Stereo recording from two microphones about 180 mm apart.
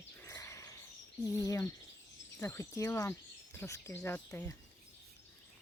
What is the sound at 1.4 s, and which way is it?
Speech, 20° left (ahead or behind).